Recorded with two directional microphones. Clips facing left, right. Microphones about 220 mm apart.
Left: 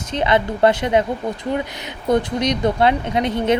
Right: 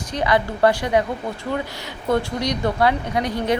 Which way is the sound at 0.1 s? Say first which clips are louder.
Left 2 dB; 25° left (ahead or behind).